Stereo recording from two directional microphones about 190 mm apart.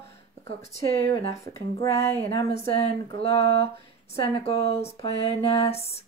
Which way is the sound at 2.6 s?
30° left (ahead or behind).